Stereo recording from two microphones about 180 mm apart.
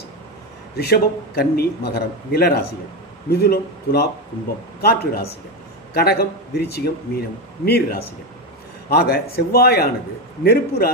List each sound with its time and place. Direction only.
0.7 s a man's voice: 60° left (ahead or behind)